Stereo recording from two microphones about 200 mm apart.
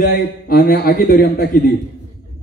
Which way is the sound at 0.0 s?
50° left (ahead or behind).